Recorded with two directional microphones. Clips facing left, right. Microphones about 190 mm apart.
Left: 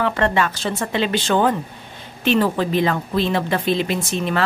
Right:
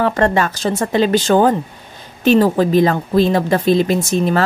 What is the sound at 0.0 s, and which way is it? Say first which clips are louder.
Speech: right 4 dB; 40° right (ahead or behind).